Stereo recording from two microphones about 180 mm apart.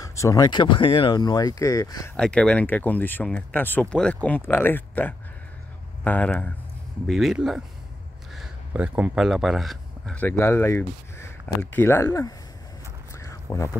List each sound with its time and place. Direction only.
0.0 s speech: 20° left (ahead or behind)
2.1 s speech: 5° left (ahead or behind)
7.1 s speech: centre (ahead or behind); by 12.4 s 15° left (ahead or behind)
13.1 s a sound: 15° left (ahead or behind)